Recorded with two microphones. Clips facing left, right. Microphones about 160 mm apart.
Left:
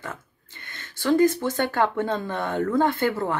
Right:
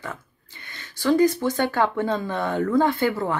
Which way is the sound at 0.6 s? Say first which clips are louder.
Even; 15° right (ahead or behind).